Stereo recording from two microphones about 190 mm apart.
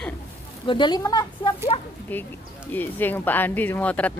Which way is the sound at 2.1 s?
10° left (ahead or behind).